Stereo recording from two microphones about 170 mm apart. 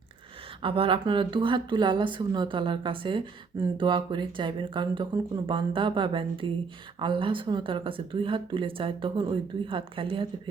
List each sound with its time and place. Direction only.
0.6 s a woman's voice: 30° right (ahead or behind)